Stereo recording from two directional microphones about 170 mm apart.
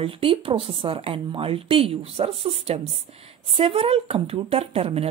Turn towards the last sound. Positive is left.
turn(degrees=-35)  # may be behind; listen again after turning